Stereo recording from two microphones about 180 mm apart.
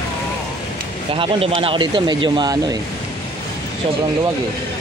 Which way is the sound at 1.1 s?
30° right (ahead or behind).